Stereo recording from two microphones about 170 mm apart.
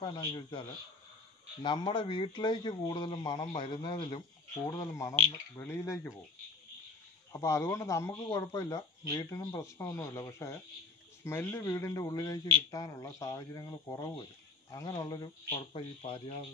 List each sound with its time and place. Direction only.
0.0 s speech: 25° left (ahead or behind)
7.3 s speech: 15° left (ahead or behind)
15.5 s speech: 35° left (ahead or behind)